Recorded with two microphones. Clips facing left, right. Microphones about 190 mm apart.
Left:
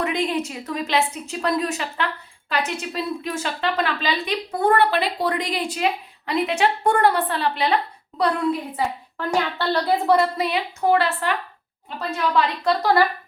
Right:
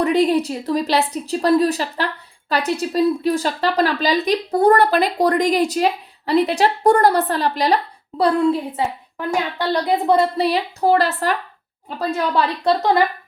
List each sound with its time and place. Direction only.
0.0 s speech: 35° right (ahead or behind)
8.2 s a woman's voice: 25° right (ahead or behind)